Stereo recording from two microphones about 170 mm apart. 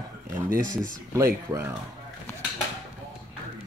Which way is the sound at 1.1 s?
15° right (ahead or behind).